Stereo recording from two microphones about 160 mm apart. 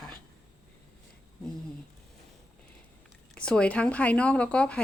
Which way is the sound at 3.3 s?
5° left (ahead or behind).